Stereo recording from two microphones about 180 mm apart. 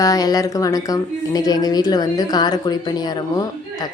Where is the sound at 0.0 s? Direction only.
20° left (ahead or behind).